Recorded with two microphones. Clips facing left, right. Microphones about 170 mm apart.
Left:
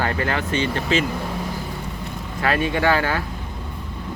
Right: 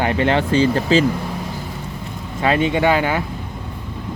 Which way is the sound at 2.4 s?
20° right (ahead or behind).